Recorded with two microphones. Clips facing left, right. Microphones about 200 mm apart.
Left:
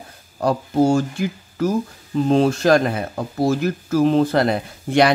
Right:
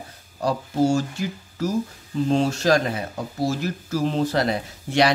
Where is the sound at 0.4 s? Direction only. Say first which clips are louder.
Left 4 dB; 55° left (ahead or behind).